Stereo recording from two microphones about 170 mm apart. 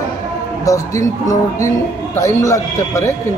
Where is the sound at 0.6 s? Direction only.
20° left (ahead or behind).